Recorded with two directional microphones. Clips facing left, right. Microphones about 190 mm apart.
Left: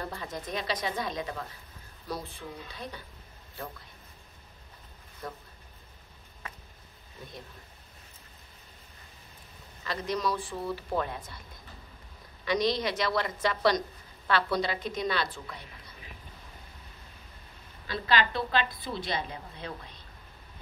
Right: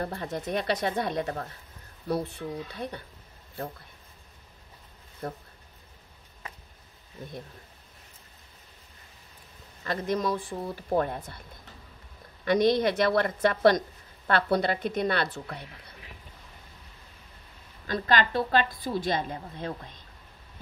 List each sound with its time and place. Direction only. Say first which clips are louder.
0.0 s a woman's voice: right 5 dB; 55° right (ahead or behind)
5.2 s a woman's voice: right 5 dB; 55° right (ahead or behind)
9.8 s a woman's voice: right 3 dB; 50° right (ahead or behind)
10.5 s speech: right 2 dB; 30° right (ahead or behind)
11.0 s a woman's voice: right 5 dB; 55° right (ahead or behind)
12.4 s a woman's voice: right 5 dB; 55° right (ahead or behind)
17.8 s a woman's voice: right 2 dB; 45° right (ahead or behind)